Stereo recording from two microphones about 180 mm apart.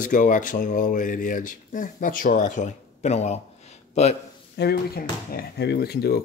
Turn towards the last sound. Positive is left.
turn(degrees=60)  # may be behind; listen again after turning